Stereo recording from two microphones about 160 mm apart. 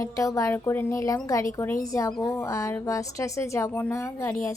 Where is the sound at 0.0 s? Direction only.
20° left (ahead or behind).